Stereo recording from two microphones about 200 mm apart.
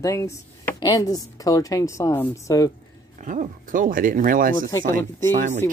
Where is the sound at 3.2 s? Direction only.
40° right (ahead or behind).